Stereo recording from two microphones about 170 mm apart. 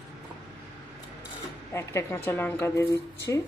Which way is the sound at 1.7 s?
15° left (ahead or behind).